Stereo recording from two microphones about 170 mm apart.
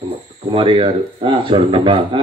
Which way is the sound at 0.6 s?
30° right (ahead or behind).